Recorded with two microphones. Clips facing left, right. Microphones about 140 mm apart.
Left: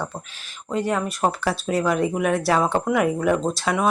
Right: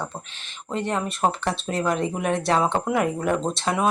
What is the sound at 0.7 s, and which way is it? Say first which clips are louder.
Speech: left 3 dB; 5° left (ahead or behind).